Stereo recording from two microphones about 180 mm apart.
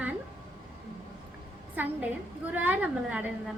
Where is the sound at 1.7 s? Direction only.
10° right (ahead or behind).